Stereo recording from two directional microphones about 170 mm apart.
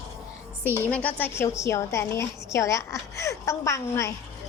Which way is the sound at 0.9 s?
10° left (ahead or behind).